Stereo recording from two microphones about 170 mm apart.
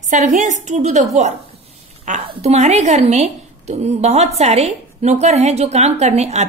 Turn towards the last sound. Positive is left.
turn(degrees=-40)  # may be behind; listen again after turning